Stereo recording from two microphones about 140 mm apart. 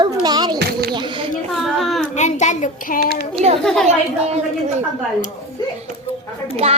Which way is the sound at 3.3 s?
45° right (ahead or behind).